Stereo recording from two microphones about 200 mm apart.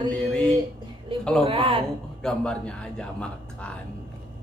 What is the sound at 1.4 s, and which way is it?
Speech, 25° right (ahead or behind).